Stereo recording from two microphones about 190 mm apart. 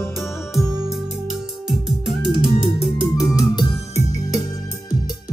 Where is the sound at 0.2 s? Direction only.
15° left (ahead or behind).